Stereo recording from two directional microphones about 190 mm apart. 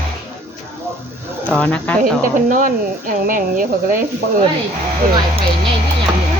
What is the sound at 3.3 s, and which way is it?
Speech, 45° right (ahead or behind).